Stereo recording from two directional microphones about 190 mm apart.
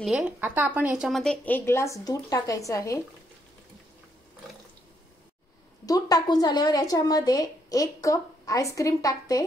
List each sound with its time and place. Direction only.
0.0 s a woman's voice: 5° right (ahead or behind); by 3.0 s 15° left (ahead or behind)
5.9 s a woman's voice: 20° left (ahead or behind)